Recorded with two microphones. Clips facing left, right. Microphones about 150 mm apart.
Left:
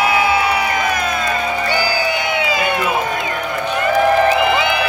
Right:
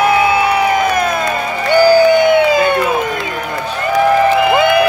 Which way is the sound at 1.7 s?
55° right (ahead or behind).